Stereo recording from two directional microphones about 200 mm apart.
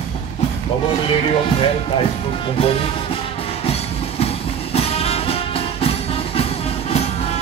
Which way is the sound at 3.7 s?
30° left (ahead or behind).